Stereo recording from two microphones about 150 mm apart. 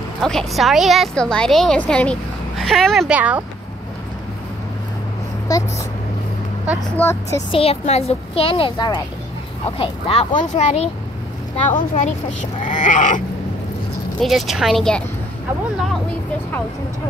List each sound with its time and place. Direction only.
0.2 s a woman's voice: 5° left (ahead or behind)
3.2 s speech: 10° right (ahead or behind)
5.5 s speech: 25° left (ahead or behind)
7.0 s speech: 20° left (ahead or behind)
7.5 s a woman's voice: 45° left (ahead or behind)
9.7 s a woman's voice: 40° left (ahead or behind); by 13.2 s 60° left (ahead or behind)
14.2 s a woman's voice: centre (ahead or behind)